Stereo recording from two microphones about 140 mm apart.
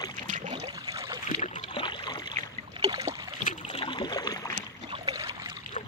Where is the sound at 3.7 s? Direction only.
45° left (ahead or behind).